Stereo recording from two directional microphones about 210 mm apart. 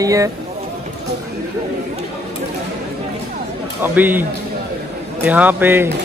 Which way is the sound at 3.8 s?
10° right (ahead or behind).